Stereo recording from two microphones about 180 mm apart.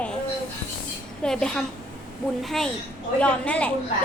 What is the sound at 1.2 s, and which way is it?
A woman's voice, 5° left (ahead or behind).